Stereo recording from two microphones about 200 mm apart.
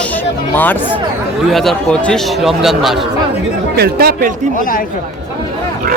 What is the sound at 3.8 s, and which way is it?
Speech, 50° right (ahead or behind).